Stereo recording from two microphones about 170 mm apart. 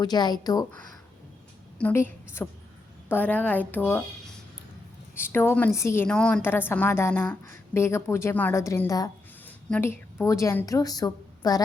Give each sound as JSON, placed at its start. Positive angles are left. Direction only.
{"t": 0.0, "sound": "a woman's voice", "side_deg": 25}
{"t": 1.8, "sound": "a woman's voice", "side_deg": 15}
{"t": 5.1, "sound": "a woman's voice", "side_deg": 15}
{"t": 6.1, "sound": "a woman's voice", "side_deg": 5}